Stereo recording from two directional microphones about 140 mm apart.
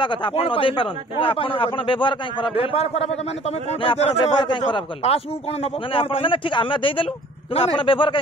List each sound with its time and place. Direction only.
0.0 s speech: 35° left (ahead or behind)
4.5 s speech: 35° left (ahead or behind)